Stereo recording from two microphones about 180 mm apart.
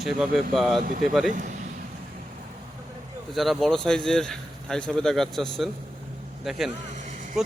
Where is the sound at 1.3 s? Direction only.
45° right (ahead or behind).